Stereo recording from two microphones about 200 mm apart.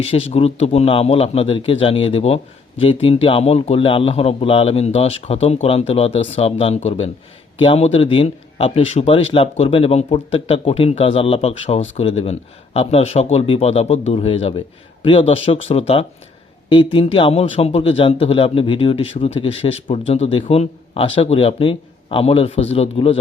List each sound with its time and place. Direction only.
0.0 s speech: 30° left (ahead or behind)